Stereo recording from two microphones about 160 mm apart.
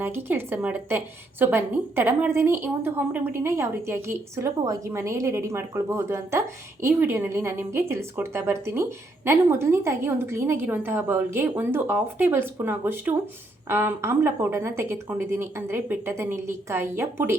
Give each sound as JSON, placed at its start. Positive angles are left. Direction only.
{"t": 0.0, "sound": "a woman's voice", "side_deg": -15}